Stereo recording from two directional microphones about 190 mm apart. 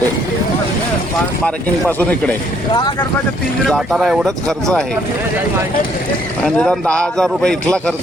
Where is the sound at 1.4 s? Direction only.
10° left (ahead or behind).